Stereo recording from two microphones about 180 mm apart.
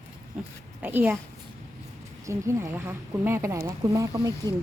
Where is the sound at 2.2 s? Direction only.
15° right (ahead or behind).